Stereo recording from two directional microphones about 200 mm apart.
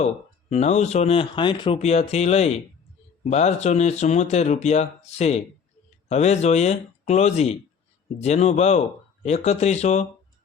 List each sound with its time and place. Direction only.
0.5 s speech: 35° left (ahead or behind)